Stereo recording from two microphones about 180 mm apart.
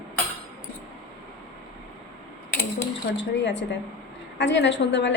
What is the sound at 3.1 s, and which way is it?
A woman's voice, 90° left.